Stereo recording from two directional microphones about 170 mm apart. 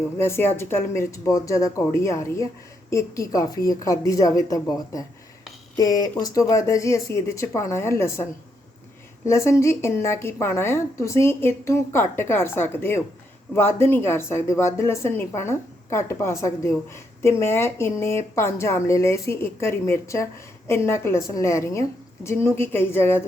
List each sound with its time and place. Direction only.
0.2 s a woman's voice: 15° left (ahead or behind)